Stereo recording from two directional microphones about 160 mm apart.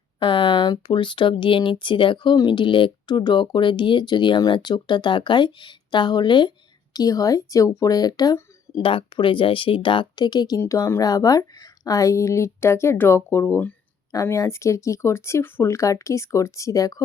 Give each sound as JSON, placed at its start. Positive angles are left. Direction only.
{"t": 0.2, "sound": "speech", "side_deg": 30}